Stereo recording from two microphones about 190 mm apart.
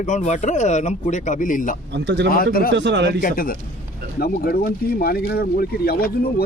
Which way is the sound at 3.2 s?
45° left (ahead or behind).